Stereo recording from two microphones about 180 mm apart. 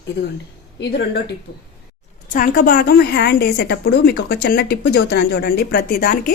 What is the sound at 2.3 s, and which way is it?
A woman's voice, 55° left (ahead or behind).